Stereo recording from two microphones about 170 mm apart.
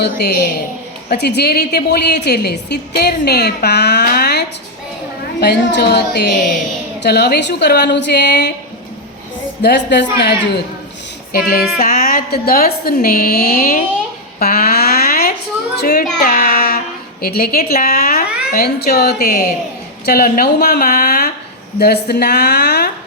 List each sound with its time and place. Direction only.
0.0 s a woman's voice: 70° left (ahead or behind)
9.6 s a woman's voice: 90° left
11.3 s a woman's voice: 65° left (ahead or behind)
14.3 s a sound: 65° left (ahead or behind)
15.7 s music: 70° left (ahead or behind)
16.2 s a sound: 60° left (ahead or behind)
18.5 s a woman's voice: 65° left (ahead or behind)